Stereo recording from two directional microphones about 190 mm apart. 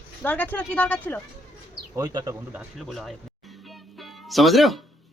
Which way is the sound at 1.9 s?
20° right (ahead or behind).